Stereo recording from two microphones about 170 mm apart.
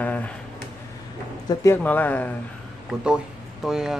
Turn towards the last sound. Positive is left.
turn(degrees=-5)  # may be behind; listen again after turning